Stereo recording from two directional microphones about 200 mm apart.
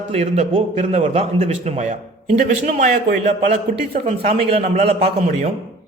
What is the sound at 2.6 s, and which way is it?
A man's voice, 40° right (ahead or behind).